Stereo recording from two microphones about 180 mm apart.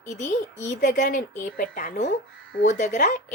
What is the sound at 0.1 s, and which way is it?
A child's voice, 40° left (ahead or behind).